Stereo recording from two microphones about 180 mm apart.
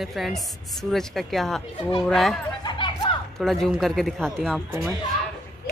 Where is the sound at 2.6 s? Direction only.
25° left (ahead or behind).